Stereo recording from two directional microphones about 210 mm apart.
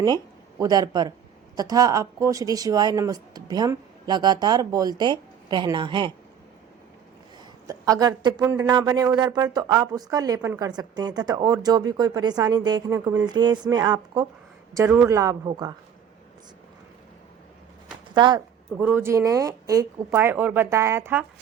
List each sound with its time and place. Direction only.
0.6 s speech: 20° right (ahead or behind)
7.7 s speech: 15° right (ahead or behind)
18.1 s speech: 20° right (ahead or behind)
18.8 s speech: 10° right (ahead or behind)